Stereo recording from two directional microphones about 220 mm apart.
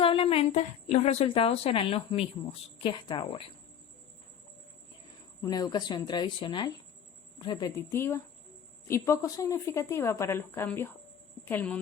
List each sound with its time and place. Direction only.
0.0 s a woman's voice: 25° left (ahead or behind)
5.4 s a woman's voice: 15° left (ahead or behind)